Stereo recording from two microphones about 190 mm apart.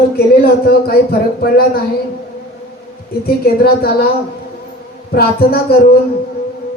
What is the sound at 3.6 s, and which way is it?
Speech, 55° left (ahead or behind).